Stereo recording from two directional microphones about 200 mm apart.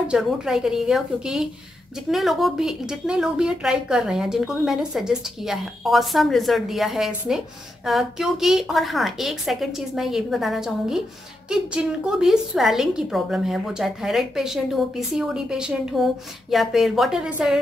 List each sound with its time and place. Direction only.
0.1 s a woman's voice: centre (ahead or behind)